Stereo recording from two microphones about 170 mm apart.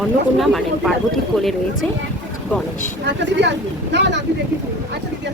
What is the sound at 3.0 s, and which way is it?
Speech, 90° right.